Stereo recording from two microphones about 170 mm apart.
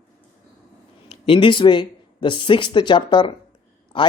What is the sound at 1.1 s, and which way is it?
Speech, 30° left (ahead or behind).